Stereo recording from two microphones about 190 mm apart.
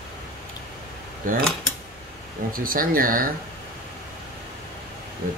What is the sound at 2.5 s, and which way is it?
Speech, 50° right (ahead or behind).